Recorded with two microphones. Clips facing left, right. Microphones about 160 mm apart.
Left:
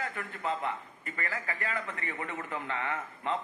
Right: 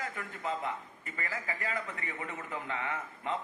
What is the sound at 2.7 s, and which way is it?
Speech, 35° left (ahead or behind).